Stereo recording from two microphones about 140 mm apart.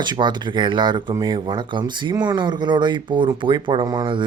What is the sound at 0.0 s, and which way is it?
Speech, 35° right (ahead or behind).